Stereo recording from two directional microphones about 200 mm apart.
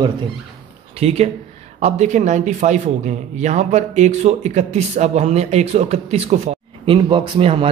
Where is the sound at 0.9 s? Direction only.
30° right (ahead or behind).